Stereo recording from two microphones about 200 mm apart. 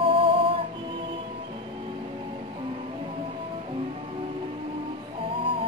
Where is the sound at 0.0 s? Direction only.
25° right (ahead or behind).